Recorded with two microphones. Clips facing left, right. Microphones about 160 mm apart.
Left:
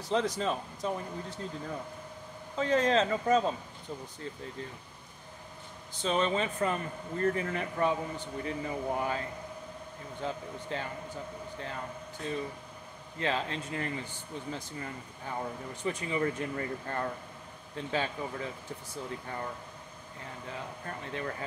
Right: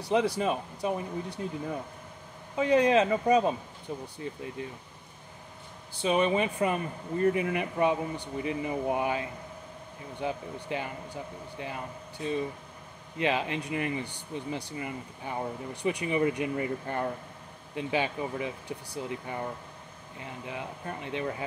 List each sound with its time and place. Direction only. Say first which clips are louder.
0.0 s a man's voice: right 3 dB; 10° right (ahead or behind)
2.5 s a man's voice: right 4 dB; 15° right (ahead or behind)
5.9 s a man's voice: right 4 dB; 15° right (ahead or behind)
20.4 s a man's voice: right 3 dB; 15° right (ahead or behind)